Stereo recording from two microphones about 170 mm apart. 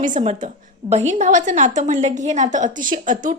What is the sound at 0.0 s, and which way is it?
A woman's voice, 50° right (ahead or behind).